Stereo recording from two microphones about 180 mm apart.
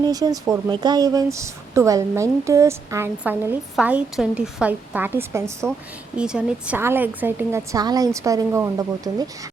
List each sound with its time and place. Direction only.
0.1 s a woman's voice: 20° right (ahead or behind)